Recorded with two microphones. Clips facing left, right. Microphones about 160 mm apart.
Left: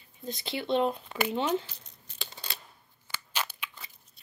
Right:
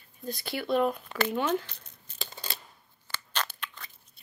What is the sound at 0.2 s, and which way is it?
Speech, 20° left (ahead or behind).